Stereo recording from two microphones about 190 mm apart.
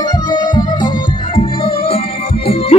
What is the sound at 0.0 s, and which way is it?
Music, 20° left (ahead or behind).